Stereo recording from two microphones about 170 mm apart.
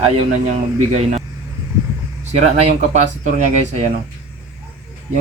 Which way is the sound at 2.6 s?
40° right (ahead or behind).